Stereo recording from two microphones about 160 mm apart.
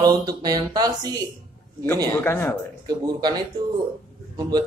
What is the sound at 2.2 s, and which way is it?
Speech, 10° left (ahead or behind).